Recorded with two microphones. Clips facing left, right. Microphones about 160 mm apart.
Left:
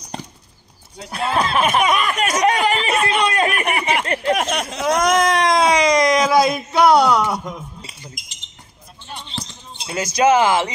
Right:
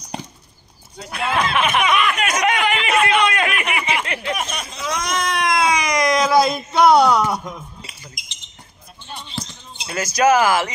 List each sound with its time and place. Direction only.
1.1 s speech: 35° left (ahead or behind)
4.4 s speech: 70° left (ahead or behind); by 7.5 s 5° left (ahead or behind)
9.4 s speech: 20° left (ahead or behind)